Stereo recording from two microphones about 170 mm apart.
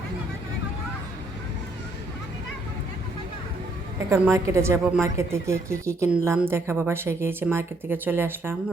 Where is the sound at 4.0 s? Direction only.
15° right (ahead or behind).